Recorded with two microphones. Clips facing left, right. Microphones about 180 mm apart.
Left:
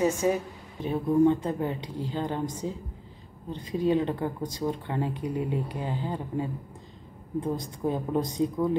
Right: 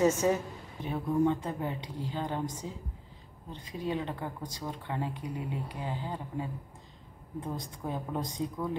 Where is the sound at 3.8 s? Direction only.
25° left (ahead or behind).